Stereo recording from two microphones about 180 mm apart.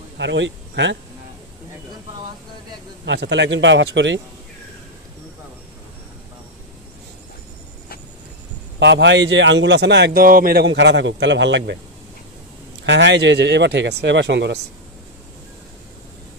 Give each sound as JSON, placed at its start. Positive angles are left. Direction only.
{"t": 0.2, "sound": "speech", "side_deg": -85}
{"t": 3.1, "sound": "speech", "side_deg": -80}
{"t": 8.7, "sound": "speech", "side_deg": -75}
{"t": 12.8, "sound": "speech", "side_deg": -80}